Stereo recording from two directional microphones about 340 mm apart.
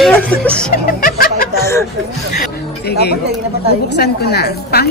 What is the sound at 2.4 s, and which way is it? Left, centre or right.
A woman's voice, left.